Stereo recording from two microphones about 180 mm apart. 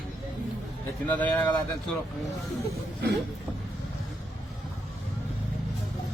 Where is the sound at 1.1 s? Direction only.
10° left (ahead or behind).